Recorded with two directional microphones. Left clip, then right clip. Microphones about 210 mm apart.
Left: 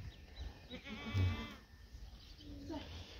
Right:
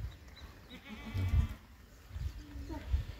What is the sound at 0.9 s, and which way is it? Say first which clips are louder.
Sheep: left 1 dB; 40° left (ahead or behind).